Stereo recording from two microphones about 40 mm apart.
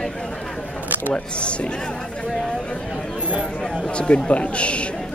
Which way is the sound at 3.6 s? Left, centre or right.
Centre.